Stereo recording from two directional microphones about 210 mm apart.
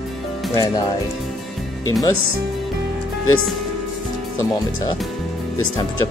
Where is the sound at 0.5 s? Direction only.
15° left (ahead or behind).